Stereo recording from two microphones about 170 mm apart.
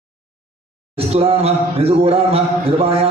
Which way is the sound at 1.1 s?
35° right (ahead or behind).